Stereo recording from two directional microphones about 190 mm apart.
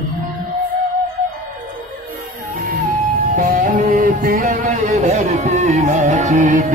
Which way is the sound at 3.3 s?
50° right (ahead or behind).